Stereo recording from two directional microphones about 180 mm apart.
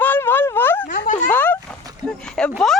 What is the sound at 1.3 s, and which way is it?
Speech, 10° left (ahead or behind).